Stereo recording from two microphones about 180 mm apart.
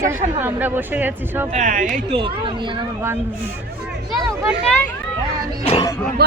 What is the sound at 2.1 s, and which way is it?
Speech, 30° right (ahead or behind).